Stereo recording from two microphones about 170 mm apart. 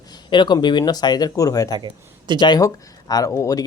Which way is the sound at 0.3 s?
25° left (ahead or behind).